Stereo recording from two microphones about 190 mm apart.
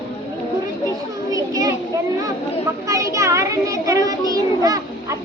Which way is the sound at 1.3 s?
20° right (ahead or behind).